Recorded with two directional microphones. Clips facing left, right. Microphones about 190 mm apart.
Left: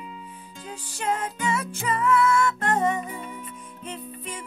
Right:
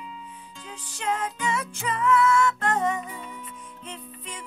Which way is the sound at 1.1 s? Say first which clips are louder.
Even; 50° left (ahead or behind).